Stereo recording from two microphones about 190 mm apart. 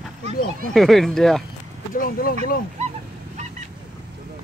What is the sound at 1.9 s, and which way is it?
Speech, 50° left (ahead or behind).